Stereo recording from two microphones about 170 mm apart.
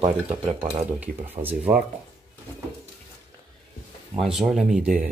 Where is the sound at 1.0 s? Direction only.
10° right (ahead or behind).